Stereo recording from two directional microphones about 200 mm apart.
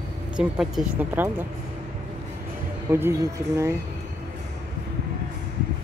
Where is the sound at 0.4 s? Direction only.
5° right (ahead or behind).